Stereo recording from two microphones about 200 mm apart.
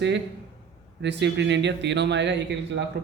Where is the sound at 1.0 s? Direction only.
60° right (ahead or behind).